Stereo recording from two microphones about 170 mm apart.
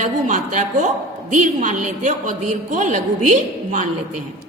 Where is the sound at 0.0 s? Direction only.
45° right (ahead or behind).